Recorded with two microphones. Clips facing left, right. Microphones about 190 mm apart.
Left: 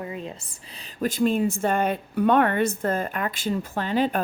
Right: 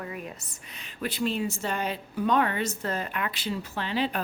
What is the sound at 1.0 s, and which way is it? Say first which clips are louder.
A woman's voice: left 7 dB; 45° left (ahead or behind).